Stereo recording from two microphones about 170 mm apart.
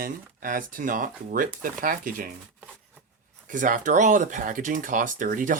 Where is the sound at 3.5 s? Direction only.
50° right (ahead or behind).